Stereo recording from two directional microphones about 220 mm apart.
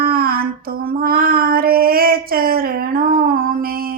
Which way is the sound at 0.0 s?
45° right (ahead or behind).